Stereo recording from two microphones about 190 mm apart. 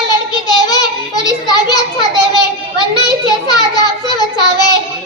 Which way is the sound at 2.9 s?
20° left (ahead or behind).